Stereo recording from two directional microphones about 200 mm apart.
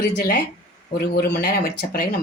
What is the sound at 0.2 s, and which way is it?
Speech, 50° left (ahead or behind).